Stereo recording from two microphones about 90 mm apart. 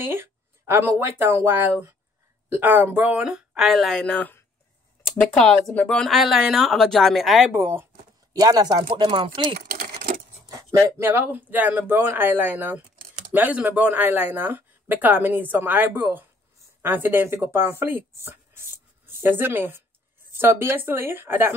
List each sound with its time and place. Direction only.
0.0 s speech: 25° right (ahead or behind); by 4.0 s centre (ahead or behind)
4.0 s speech: 15° left (ahead or behind)
6.0 s speech: centre (ahead or behind)
7.5 s speech: 25° right (ahead or behind)
8.3 s speech: 45° right (ahead or behind)
8.8 s speech: 65° right (ahead or behind)
11.0 s speech: 20° right (ahead or behind)